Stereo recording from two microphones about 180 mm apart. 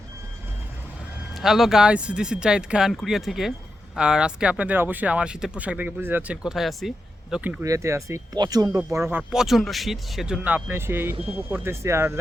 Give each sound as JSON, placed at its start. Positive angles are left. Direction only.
{"t": 1.4, "sound": "speech", "side_deg": 0}
{"t": 7.6, "sound": "speech", "side_deg": -15}
{"t": 9.0, "sound": "speech", "side_deg": -5}